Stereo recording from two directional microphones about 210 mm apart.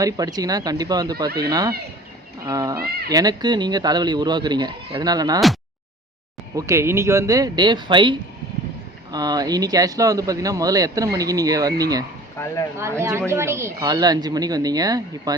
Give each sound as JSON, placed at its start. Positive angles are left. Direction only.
{"t": 0.0, "sound": "speech", "side_deg": -20}
{"t": 6.6, "sound": "speech", "side_deg": -15}
{"t": 8.5, "sound": "a sound", "side_deg": -45}
{"t": 9.1, "sound": "speech", "side_deg": -20}
{"t": 12.4, "sound": "speech", "side_deg": 10}
{"t": 13.0, "sound": "speech", "side_deg": -10}